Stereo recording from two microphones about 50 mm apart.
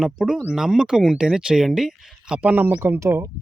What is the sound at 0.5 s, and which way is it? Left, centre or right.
Speech, centre.